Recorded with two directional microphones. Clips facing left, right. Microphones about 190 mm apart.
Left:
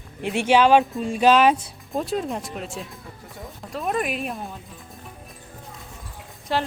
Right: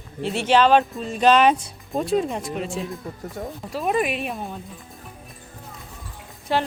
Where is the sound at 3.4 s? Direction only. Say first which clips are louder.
Right 7 dB; 50° right (ahead or behind).